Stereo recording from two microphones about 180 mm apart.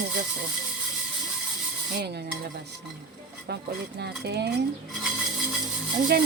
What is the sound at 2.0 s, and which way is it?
Speech, 65° right (ahead or behind).